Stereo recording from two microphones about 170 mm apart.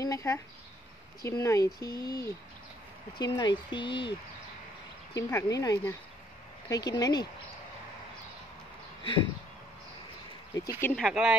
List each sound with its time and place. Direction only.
0.0 s a sound: 20° left (ahead or behind)
1.2 s speech: 20° left (ahead or behind)
5.1 s speech: 20° left (ahead or behind)
10.5 s speech: 15° left (ahead or behind)
11.0 s speech: centre (ahead or behind)